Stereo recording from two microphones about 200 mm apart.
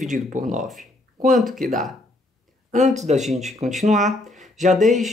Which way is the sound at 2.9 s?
35° right (ahead or behind).